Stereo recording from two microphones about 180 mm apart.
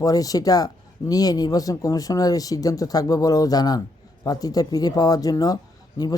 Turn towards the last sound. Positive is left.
turn(degrees=20)  # may be behind; listen again after turning